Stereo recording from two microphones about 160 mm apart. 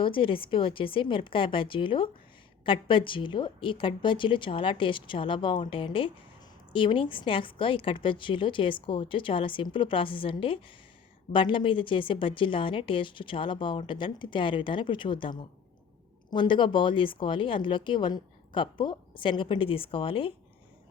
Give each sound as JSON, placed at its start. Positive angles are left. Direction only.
{"t": 0.0, "sound": "a woman's voice", "side_deg": 35}